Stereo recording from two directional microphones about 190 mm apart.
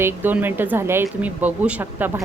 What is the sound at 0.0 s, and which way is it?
A woman's voice, 10° right (ahead or behind).